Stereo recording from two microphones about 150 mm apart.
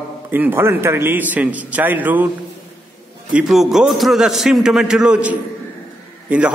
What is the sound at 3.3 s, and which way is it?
A man's voice, 5° right (ahead or behind).